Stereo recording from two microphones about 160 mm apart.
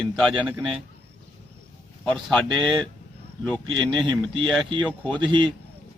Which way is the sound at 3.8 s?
5° left (ahead or behind).